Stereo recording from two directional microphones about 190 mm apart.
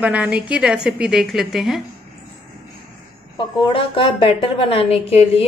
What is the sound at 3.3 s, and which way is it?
A woman's voice, 30° left (ahead or behind).